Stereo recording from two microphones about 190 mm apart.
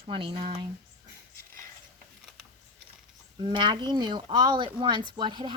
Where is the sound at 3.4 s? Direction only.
25° right (ahead or behind).